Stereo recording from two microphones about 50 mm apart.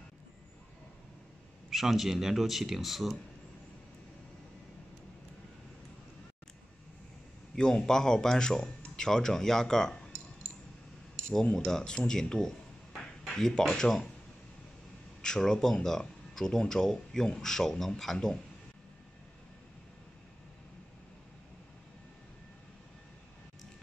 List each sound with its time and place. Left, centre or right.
1.7 s speech: centre
7.5 s speech: centre
11.1 s cutlery: centre
11.5 s speech: centre
15.2 s speech: centre